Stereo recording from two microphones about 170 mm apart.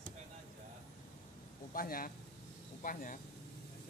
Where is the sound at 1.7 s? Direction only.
60° left (ahead or behind).